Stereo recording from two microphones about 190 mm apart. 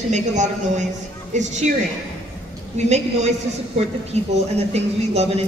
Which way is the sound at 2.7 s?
35° right (ahead or behind).